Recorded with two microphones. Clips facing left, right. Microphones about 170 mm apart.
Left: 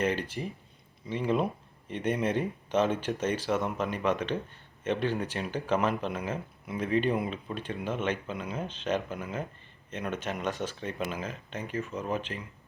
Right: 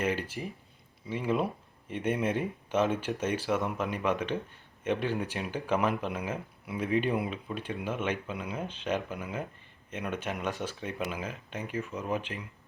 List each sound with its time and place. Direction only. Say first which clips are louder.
0.0 s speech: left 2 dB; 5° right (ahead or behind)